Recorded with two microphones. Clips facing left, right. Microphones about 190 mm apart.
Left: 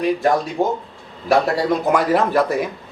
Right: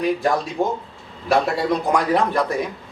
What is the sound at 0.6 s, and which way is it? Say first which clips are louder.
A man's voice: left 2 dB; centre (ahead or behind).